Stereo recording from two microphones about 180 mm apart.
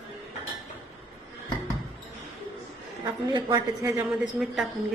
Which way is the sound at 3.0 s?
25° right (ahead or behind).